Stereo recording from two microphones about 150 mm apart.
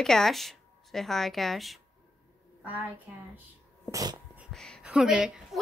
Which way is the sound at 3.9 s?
25° right (ahead or behind).